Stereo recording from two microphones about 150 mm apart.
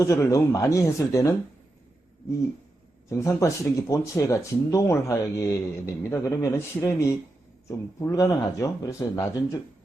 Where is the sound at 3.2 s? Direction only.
20° left (ahead or behind).